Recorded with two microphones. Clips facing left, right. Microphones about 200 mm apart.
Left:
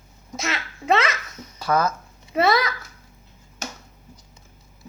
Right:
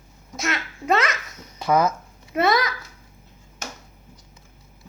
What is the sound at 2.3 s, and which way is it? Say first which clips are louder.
Speech: left 1 dB; centre (ahead or behind).